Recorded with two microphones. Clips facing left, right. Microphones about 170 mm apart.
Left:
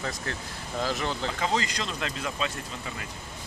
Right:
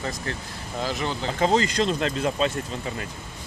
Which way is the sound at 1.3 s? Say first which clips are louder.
Right 7 dB; 35° right (ahead or behind).